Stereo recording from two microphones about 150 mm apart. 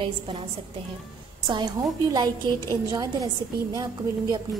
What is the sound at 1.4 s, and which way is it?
Speech, 30° right (ahead or behind).